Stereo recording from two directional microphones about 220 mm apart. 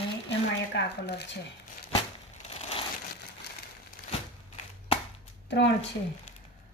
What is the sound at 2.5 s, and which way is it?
Crumpling, 25° left (ahead or behind).